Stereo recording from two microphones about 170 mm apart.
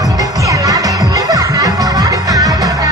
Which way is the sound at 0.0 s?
20° right (ahead or behind).